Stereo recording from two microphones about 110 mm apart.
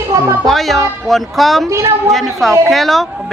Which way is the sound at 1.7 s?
25° right (ahead or behind).